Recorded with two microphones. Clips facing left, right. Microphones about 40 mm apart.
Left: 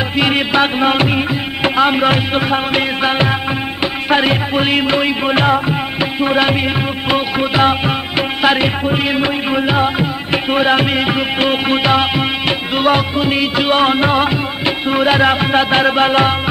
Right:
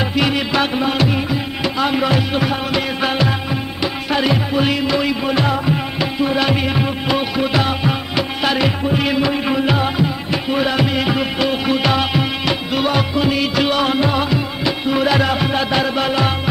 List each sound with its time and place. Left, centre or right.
0.3 s music: left
3.0 s music of bollywood: left
3.8 s music: left
11.8 s music: left